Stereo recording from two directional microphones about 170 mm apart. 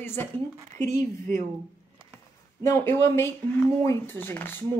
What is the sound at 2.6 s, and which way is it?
A woman's voice, 15° left (ahead or behind).